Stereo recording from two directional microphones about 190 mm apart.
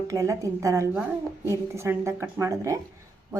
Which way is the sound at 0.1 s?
15° right (ahead or behind).